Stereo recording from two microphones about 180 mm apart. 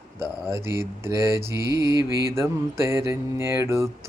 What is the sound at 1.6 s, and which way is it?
Mantra, 65° right (ahead or behind).